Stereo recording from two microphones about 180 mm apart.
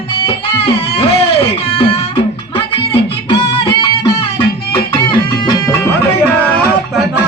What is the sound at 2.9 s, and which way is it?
Music, 30° left (ahead or behind).